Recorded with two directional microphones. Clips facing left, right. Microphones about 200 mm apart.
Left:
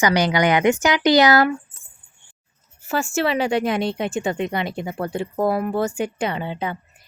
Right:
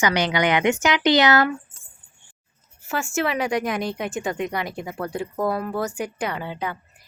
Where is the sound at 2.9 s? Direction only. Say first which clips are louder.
Left 3 dB; 35° left (ahead or behind).